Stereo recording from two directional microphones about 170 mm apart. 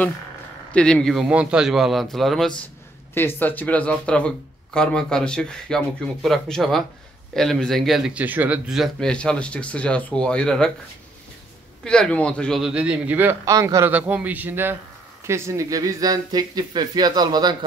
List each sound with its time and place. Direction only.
0.7 s a man's voice: 5° left (ahead or behind)
11.8 s speech: 5° left (ahead or behind); by 17.6 s 25° right (ahead or behind)